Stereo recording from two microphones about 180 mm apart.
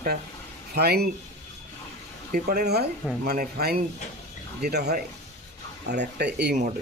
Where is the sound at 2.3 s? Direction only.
55° right (ahead or behind).